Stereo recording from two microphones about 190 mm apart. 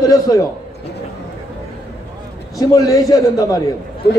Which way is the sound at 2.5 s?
20° left (ahead or behind).